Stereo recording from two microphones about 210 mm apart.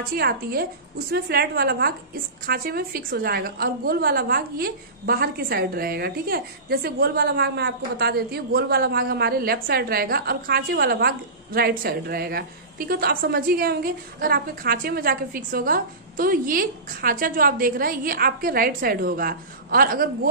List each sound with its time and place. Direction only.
0.1 s a woman's voice: 45° right (ahead or behind)